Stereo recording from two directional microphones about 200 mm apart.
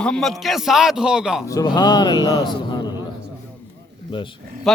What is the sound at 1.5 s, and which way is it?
A man's voice, 20° left (ahead or behind).